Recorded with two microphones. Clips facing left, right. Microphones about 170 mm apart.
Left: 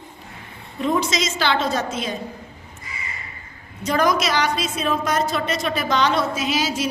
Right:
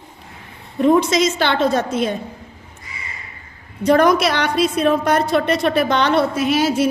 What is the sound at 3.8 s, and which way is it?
A woman's voice, 60° right (ahead or behind).